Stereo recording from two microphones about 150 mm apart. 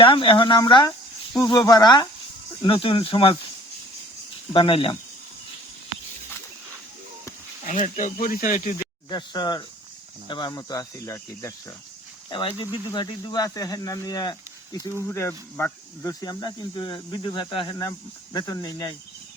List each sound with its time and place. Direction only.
0.0 s speech: 35° left (ahead or behind)
4.5 s speech: 35° left (ahead or behind)
7.7 s speech: 55° left (ahead or behind)
9.0 s speech: 30° left (ahead or behind)
12.3 s speech: 35° left (ahead or behind); by 16.1 s 15° left (ahead or behind)
16.2 s speech: 25° left (ahead or behind)